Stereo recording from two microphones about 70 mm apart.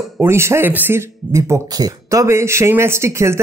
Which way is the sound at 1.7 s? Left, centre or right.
Right.